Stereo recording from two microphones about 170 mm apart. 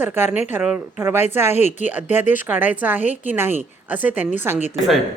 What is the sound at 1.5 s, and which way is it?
Speech, 40° left (ahead or behind).